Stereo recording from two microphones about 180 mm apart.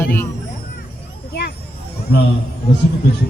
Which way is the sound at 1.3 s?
65° left (ahead or behind).